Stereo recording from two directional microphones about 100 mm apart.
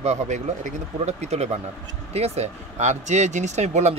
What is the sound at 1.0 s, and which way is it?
Speech, 90° right.